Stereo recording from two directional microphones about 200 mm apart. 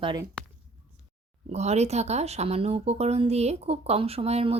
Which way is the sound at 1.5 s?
35° right (ahead or behind).